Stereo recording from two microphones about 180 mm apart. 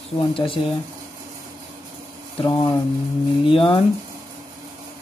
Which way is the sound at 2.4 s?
25° left (ahead or behind).